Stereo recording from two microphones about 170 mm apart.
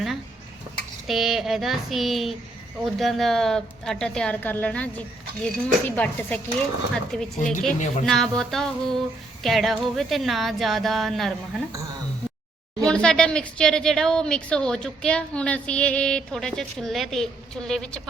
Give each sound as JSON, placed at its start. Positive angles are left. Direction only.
{"t": 1.0, "sound": "speech", "side_deg": 0}
{"t": 7.3, "sound": "speech", "side_deg": 50}
{"t": 8.0, "sound": "speech", "side_deg": 5}
{"t": 12.8, "sound": "speech", "side_deg": 5}